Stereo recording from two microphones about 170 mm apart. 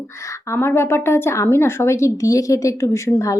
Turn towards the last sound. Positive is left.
turn(degrees=15)  # may be behind; listen again after turning